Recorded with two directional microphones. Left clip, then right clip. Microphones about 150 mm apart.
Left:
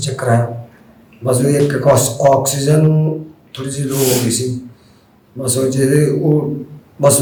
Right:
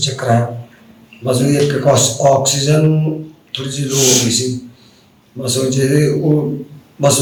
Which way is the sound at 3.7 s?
35° left (ahead or behind).